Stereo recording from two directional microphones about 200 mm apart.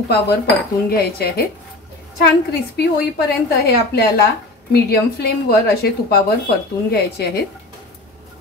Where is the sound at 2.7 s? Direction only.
50° left (ahead or behind).